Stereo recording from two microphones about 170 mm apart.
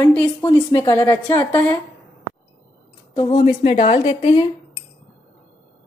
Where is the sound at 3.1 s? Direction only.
35° left (ahead or behind).